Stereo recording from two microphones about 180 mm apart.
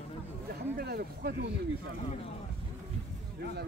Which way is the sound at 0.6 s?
60° right (ahead or behind).